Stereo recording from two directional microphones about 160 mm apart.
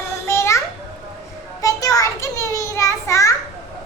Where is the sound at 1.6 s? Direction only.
20° left (ahead or behind).